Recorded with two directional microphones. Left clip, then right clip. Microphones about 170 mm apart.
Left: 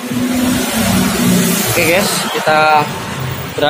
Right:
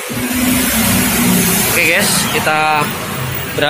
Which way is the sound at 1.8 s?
Centre (ahead or behind).